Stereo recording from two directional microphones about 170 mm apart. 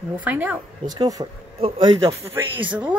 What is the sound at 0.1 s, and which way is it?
Speech, 10° right (ahead or behind).